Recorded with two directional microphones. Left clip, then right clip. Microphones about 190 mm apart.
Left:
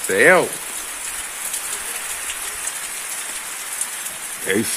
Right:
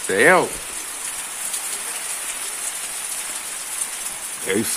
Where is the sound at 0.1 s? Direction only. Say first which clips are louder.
Left 1 dB; 5° right (ahead or behind).